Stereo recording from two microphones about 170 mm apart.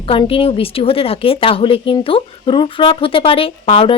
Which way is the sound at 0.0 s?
30° left (ahead or behind).